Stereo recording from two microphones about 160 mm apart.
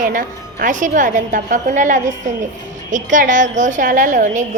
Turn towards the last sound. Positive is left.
turn(degrees=-55)  # may be behind; listen again after turning